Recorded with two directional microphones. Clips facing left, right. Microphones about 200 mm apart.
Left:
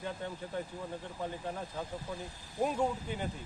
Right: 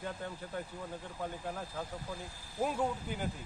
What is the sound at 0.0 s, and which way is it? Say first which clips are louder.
Speech: left 2 dB; centre (ahead or behind).